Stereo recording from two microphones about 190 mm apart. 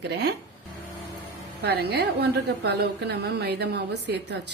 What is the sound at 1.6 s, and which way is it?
A woman's voice, 60° right (ahead or behind).